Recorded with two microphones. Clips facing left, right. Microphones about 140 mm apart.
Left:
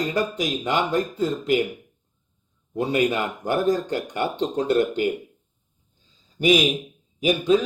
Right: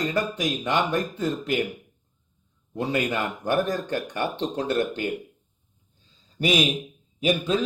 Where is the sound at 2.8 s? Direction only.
25° left (ahead or behind).